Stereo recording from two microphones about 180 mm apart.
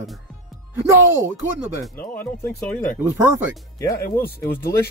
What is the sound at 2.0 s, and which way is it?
Speech, 10° left (ahead or behind).